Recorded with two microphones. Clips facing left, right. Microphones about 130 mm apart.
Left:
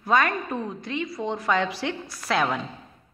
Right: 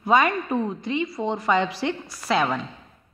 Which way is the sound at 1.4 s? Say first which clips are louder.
Right 2 dB; centre (ahead or behind).